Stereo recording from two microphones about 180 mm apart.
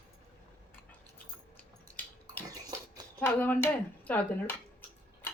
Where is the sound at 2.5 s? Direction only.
20° right (ahead or behind).